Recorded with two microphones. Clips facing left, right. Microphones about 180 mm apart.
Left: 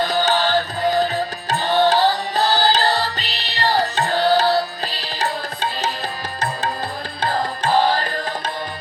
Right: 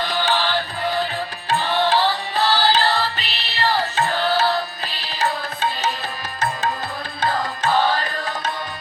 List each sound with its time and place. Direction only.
0.0 s music: 45° left (ahead or behind)
7.2 s music: 35° left (ahead or behind)